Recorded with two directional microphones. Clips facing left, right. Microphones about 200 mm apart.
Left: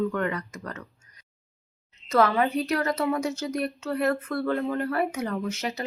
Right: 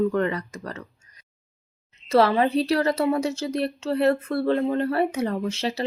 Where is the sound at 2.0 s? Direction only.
30° right (ahead or behind).